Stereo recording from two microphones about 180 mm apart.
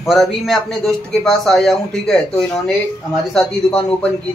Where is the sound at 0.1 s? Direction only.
Centre (ahead or behind).